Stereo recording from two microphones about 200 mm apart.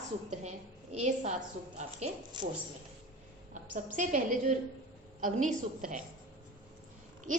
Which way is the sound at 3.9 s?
40° right (ahead or behind).